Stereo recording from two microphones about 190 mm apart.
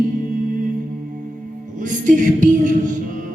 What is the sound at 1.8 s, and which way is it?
Music, 45° right (ahead or behind).